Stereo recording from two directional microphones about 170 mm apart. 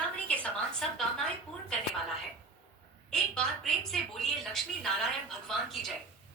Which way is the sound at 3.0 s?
5° left (ahead or behind).